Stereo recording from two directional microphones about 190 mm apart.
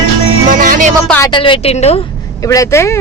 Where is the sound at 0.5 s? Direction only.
45° right (ahead or behind).